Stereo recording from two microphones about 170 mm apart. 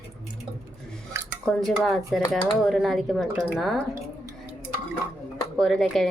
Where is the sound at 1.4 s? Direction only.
Centre (ahead or behind).